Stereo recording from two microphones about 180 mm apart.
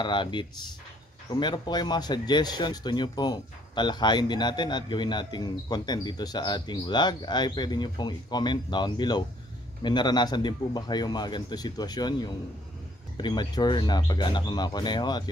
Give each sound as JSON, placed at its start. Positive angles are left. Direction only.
{"t": 0.0, "sound": "speech", "side_deg": 25}